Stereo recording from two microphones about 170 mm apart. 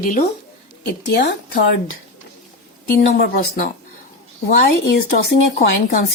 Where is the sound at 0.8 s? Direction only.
80° left.